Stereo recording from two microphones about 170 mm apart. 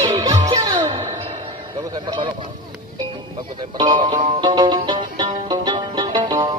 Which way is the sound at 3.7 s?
25° right (ahead or behind).